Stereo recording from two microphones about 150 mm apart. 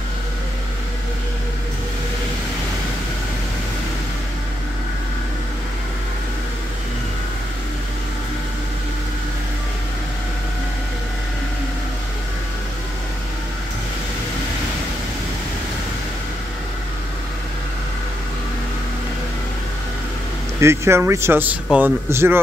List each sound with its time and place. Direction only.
20.6 s speech: 15° right (ahead or behind)